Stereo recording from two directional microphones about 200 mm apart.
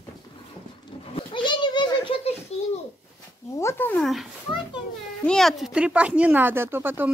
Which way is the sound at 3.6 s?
10° left (ahead or behind).